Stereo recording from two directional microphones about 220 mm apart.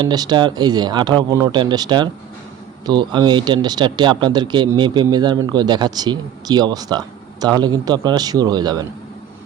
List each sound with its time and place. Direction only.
0.0 s speech: 20° right (ahead or behind)